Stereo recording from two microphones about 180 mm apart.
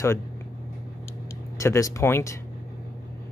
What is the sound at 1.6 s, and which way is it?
Speech, 15° left (ahead or behind).